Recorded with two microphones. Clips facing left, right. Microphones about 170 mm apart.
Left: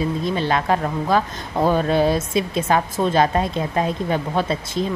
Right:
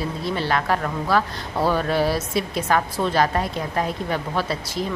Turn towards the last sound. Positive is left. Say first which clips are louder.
# left 3 dB
turn(degrees=20)  # may be behind; listen again after turning